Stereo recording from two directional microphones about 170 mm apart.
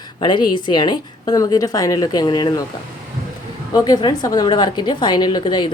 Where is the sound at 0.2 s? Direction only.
25° left (ahead or behind).